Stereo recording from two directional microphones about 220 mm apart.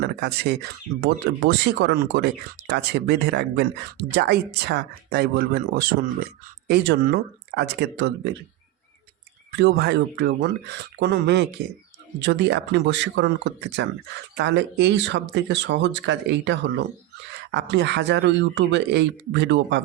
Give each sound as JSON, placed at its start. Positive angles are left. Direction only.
{"t": 0.0, "sound": "speech", "side_deg": -45}
{"t": 9.6, "sound": "speech", "side_deg": -50}